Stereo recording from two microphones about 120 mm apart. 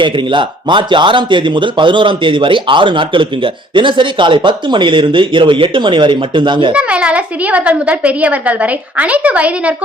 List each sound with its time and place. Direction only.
0.0 s speech: 40° right (ahead or behind)
6.7 s a woman's voice: 10° right (ahead or behind)